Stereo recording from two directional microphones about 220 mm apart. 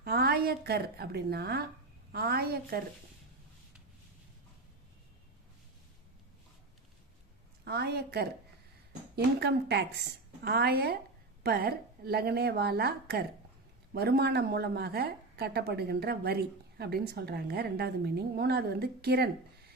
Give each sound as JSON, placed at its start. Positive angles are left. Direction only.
{"t": 0.0, "sound": "a woman's voice", "side_deg": -45}
{"t": 7.6, "sound": "speech", "side_deg": -45}